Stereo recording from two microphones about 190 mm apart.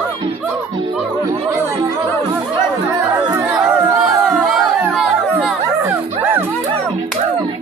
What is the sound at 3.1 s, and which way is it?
Chatter, 10° right (ahead or behind).